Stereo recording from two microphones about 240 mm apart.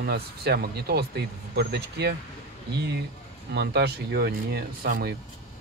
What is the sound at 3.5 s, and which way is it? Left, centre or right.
Speech, right.